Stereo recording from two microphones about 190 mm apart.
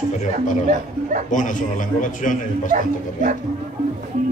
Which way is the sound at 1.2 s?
40° left (ahead or behind).